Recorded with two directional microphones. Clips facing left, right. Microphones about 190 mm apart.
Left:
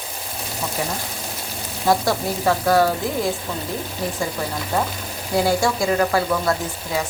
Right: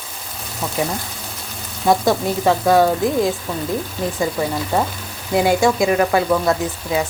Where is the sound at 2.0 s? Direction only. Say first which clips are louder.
Right 4 dB; 20° right (ahead or behind).